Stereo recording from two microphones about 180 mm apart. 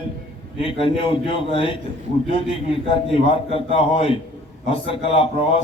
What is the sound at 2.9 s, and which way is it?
A man's voice, 30° left (ahead or behind).